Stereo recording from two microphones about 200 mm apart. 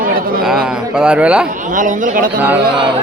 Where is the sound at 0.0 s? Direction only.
45° right (ahead or behind).